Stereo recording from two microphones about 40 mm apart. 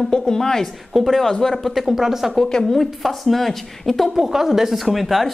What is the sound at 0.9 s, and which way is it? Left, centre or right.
Speech, centre.